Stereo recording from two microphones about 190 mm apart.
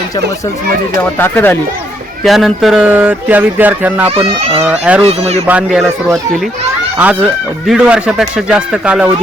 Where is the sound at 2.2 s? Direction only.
Centre (ahead or behind).